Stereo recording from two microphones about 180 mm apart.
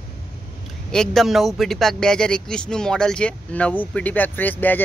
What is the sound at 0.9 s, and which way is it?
Speech, centre (ahead or behind).